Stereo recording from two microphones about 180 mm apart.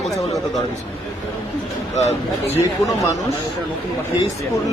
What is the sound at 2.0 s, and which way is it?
Speech, 40° left (ahead or behind).